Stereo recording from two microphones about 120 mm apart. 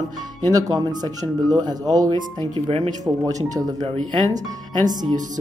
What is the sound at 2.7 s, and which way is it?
Speech, 55° right (ahead or behind).